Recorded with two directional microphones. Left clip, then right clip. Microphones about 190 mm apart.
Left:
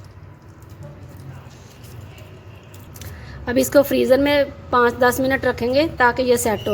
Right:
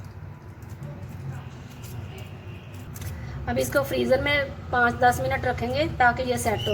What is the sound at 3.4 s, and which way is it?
A woman's voice, 50° left (ahead or behind).